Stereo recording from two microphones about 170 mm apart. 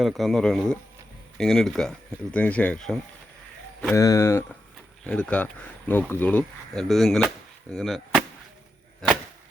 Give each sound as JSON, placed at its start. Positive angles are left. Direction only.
{"t": 0.0, "sound": "speech", "side_deg": 0}
{"t": 3.9, "sound": "speech", "side_deg": 15}